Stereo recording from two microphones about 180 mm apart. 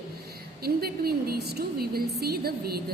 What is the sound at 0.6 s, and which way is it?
A woman's voice, 60° right (ahead or behind).